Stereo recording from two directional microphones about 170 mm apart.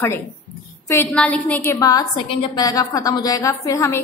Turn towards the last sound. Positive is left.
turn(degrees=15)  # may be behind; listen again after turning